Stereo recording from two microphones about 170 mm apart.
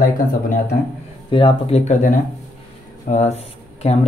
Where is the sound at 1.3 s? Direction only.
30° left (ahead or behind).